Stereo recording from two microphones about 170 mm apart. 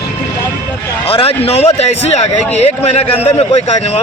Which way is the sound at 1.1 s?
35° left (ahead or behind).